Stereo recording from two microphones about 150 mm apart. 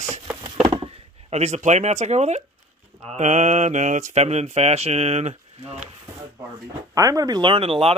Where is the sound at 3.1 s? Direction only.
50° right (ahead or behind).